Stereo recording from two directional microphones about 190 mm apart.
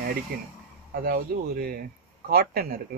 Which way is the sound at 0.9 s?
55° right (ahead or behind).